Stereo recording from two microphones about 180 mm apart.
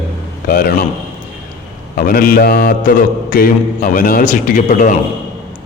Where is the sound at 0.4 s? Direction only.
55° left (ahead or behind).